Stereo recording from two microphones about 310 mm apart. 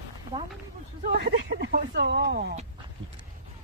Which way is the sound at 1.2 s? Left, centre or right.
Right.